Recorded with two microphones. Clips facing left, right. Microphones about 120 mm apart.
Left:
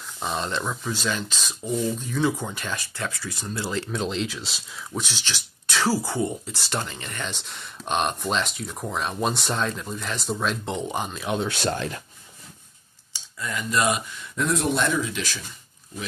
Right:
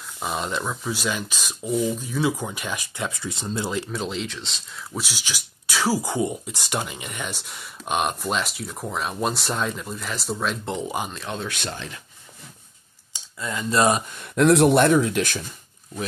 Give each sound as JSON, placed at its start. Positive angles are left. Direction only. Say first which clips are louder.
{"t": 0.2, "sound": "speech", "louder": "right 1 dB", "side_deg": -5}
{"t": 3.9, "sound": "speech", "louder": "left 1 dB", "side_deg": 0}
{"t": 11.1, "sound": "speech", "louder": "left 5 dB", "side_deg": 15}
{"t": 11.4, "sound": "speech", "louder": "left 5 dB", "side_deg": 35}
{"t": 11.7, "sound": "speech", "louder": "left 7 dB", "side_deg": 45}
{"t": 13.4, "sound": "speech", "louder": "right 4 dB", "side_deg": -25}
{"t": 14.2, "sound": "speech", "louder": "right 10 dB", "side_deg": -75}